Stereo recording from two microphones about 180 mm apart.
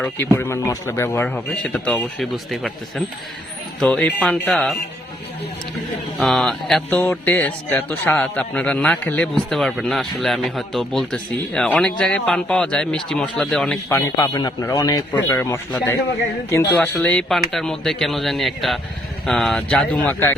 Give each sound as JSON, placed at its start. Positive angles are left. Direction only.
{"t": 0.3, "sound": "a man's voice", "side_deg": 15}
{"t": 6.1, "sound": "a man's voice", "side_deg": 0}
{"t": 14.2, "sound": "a man's voice", "side_deg": 20}